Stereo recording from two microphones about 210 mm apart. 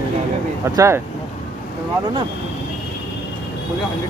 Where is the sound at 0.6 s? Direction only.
15° right (ahead or behind).